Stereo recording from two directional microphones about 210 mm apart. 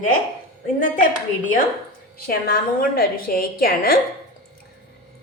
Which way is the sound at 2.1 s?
45° left (ahead or behind).